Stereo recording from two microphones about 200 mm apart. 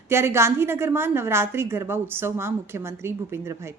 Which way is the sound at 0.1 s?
15° right (ahead or behind).